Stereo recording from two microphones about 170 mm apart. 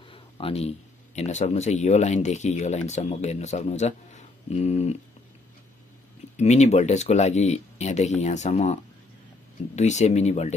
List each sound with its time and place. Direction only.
0.1 s speech: 35° left (ahead or behind)
6.3 s speech: 40° left (ahead or behind)
9.8 s speech: 40° left (ahead or behind)